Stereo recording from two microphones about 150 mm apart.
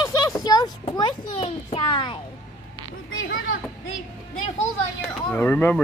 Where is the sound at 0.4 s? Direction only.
25° left (ahead or behind).